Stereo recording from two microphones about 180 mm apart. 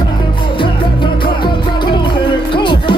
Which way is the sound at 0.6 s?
25° left (ahead or behind).